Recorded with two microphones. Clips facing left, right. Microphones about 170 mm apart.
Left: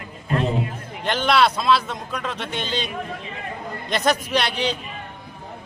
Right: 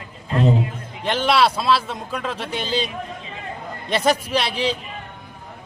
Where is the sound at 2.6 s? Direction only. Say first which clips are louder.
Right 5 dB; 30° right (ahead or behind).